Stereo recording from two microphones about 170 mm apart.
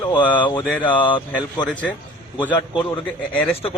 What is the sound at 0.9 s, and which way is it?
A man's voice, 10° left (ahead or behind).